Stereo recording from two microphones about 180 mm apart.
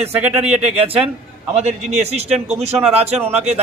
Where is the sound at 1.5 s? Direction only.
40° right (ahead or behind).